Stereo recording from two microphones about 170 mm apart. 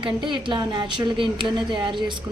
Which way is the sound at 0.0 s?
25° right (ahead or behind).